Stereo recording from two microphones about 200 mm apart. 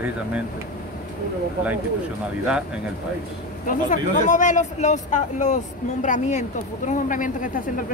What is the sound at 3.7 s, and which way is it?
Speech, 40° left (ahead or behind).